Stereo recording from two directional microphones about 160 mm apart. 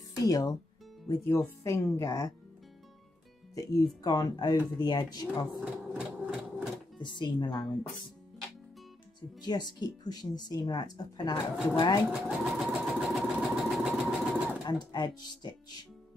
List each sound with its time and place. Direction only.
0.2 s speech: 20° left (ahead or behind)
3.5 s speech: 20° left (ahead or behind)
5.5 s sewing machine: 5° right (ahead or behind)
7.0 s speech: 30° left (ahead or behind)
9.4 s speech: 25° left (ahead or behind)
12.1 s sewing machine: 5° right (ahead or behind)
14.6 s speech: 25° left (ahead or behind)